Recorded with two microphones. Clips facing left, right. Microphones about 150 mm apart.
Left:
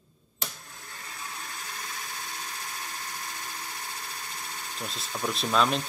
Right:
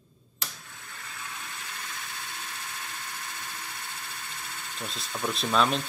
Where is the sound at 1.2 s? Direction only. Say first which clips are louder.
Left 1 dB; 35° left (ahead or behind).